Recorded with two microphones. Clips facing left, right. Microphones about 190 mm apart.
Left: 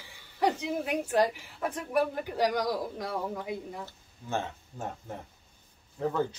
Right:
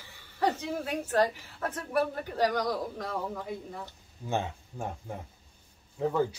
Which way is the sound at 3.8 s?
15° right (ahead or behind).